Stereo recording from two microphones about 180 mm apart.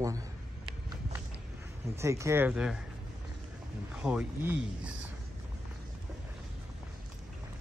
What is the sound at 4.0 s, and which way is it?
Speech, 5° right (ahead or behind).